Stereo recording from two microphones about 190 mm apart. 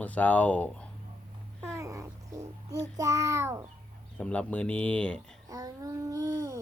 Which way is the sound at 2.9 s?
15° right (ahead or behind).